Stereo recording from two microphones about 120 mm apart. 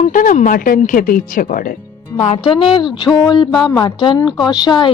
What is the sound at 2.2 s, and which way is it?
A woman's voice, 50° left (ahead or behind).